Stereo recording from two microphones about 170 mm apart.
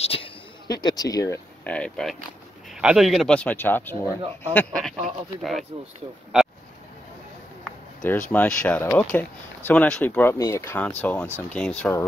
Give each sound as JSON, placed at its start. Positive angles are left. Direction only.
{"t": 0.0, "sound": "a sound", "side_deg": 35}
{"t": 0.7, "sound": "speech", "side_deg": 25}
{"t": 1.6, "sound": "speech", "side_deg": 5}
{"t": 8.3, "sound": "speech", "side_deg": 10}